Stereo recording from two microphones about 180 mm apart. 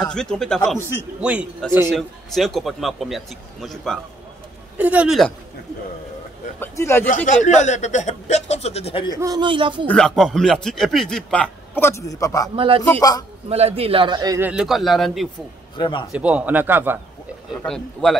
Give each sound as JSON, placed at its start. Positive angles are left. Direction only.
{"t": 0.0, "sound": "speech", "side_deg": 5}
{"t": 1.2, "sound": "a man's voice", "side_deg": -5}
{"t": 6.6, "sound": "a man's voice", "side_deg": 10}
{"t": 7.2, "sound": "a man's voice", "side_deg": 40}
{"t": 9.2, "sound": "speech", "side_deg": -25}
{"t": 9.8, "sound": "speech", "side_deg": 5}
{"t": 12.5, "sound": "a man's voice", "side_deg": -30}
{"t": 14.5, "sound": "speech", "side_deg": 0}
{"t": 15.8, "sound": "a man's voice", "side_deg": 25}
{"t": 16.1, "sound": "a man's voice", "side_deg": -5}
{"t": 17.6, "sound": "speech", "side_deg": 5}